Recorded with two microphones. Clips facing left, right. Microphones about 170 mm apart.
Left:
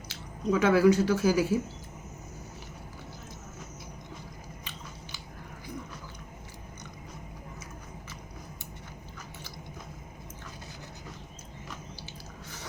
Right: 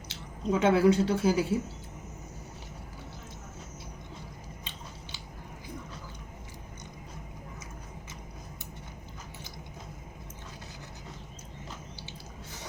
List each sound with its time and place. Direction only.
0.1 s speech: 25° right (ahead or behind)